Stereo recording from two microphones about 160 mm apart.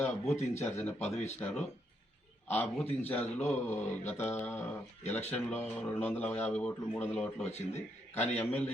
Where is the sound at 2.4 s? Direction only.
10° left (ahead or behind).